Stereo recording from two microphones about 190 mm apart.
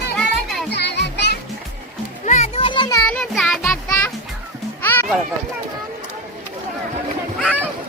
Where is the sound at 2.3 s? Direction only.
35° left (ahead or behind).